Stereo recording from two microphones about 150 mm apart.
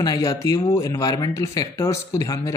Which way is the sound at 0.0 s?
20° left (ahead or behind).